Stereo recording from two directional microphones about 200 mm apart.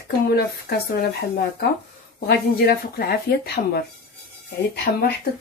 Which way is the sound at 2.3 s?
50° left (ahead or behind).